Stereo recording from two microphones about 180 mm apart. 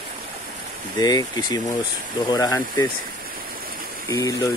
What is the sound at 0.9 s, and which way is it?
Speech, 20° left (ahead or behind).